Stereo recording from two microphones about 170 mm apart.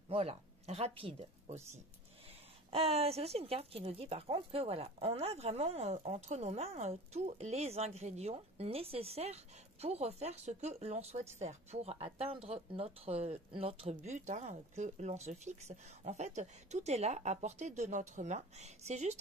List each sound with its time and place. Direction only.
0.1 s speech: 35° right (ahead or behind)